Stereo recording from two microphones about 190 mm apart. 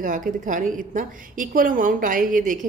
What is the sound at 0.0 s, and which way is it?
A woman's voice, 45° right (ahead or behind).